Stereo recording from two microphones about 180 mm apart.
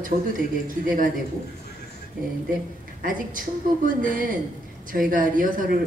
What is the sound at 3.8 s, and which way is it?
Speech, 50° right (ahead or behind).